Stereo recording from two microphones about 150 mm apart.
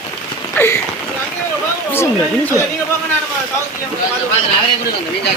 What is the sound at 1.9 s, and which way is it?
Speech, 15° left (ahead or behind).